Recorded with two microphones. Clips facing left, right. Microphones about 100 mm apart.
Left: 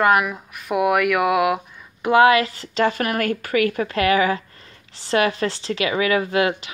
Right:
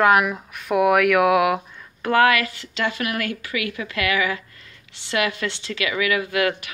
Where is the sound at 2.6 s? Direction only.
40° left (ahead or behind).